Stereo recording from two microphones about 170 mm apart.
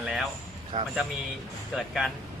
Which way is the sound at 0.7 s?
45° right (ahead or behind).